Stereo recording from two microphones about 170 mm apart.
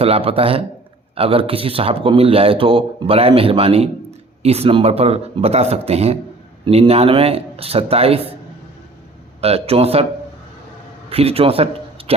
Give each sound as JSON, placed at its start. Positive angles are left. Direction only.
{"t": 0.0, "sound": "speech", "side_deg": -35}
{"t": 9.4, "sound": "speech", "side_deg": -35}
{"t": 11.1, "sound": "speech", "side_deg": -35}